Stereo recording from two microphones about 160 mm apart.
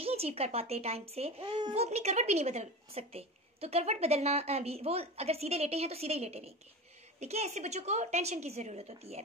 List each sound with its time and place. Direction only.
0.0 s a woman's voice: 40° right (ahead or behind)